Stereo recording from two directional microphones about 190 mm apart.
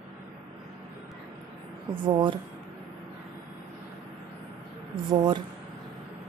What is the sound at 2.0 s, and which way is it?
Speech, 25° right (ahead or behind).